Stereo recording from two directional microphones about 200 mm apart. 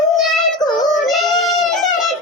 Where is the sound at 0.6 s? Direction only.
20° left (ahead or behind).